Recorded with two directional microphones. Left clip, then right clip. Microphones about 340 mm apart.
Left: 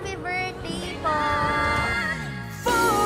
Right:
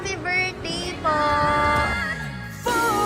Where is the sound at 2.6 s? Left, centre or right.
Centre.